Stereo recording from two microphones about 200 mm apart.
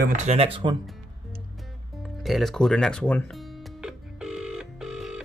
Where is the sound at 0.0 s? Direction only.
35° right (ahead or behind).